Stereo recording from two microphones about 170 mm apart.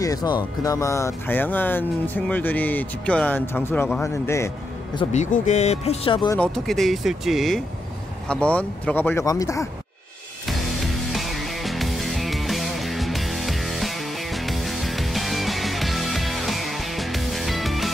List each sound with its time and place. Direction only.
0.0 s speech: 20° left (ahead or behind)
5.1 s speech: 45° left (ahead or behind)
6.3 s speech: 5° left (ahead or behind)
10.4 s music: centre (ahead or behind)